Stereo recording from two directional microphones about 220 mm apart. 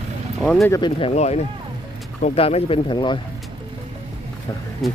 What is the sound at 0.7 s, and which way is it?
Speech, 20° left (ahead or behind).